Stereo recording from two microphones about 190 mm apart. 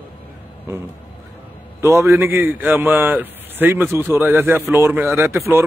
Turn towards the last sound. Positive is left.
turn(degrees=-15)  # may be behind; listen again after turning